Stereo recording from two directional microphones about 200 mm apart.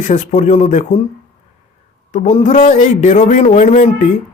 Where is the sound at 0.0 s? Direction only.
35° left (ahead or behind).